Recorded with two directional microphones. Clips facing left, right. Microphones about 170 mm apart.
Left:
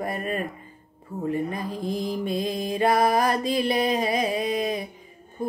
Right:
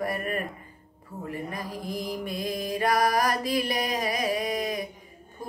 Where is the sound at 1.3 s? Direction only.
25° left (ahead or behind).